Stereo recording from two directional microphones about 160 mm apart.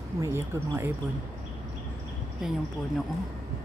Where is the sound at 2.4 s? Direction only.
5° right (ahead or behind).